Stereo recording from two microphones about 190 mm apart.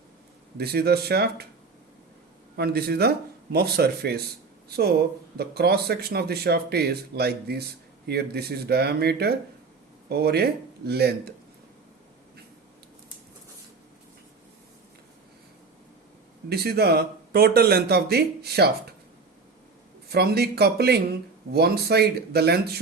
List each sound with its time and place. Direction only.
0.5 s speech: 55° right (ahead or behind)
2.6 s speech: 55° right (ahead or behind)
16.5 s speech: 55° right (ahead or behind)
20.1 s speech: 55° right (ahead or behind)